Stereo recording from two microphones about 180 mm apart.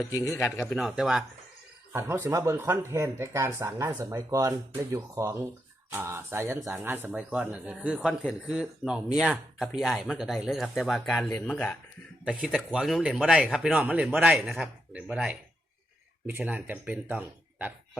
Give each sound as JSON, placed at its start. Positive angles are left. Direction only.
{"t": 0.1, "sound": "speech", "side_deg": 20}
{"t": 0.7, "sound": "speech", "side_deg": 0}
{"t": 1.9, "sound": "speech", "side_deg": -15}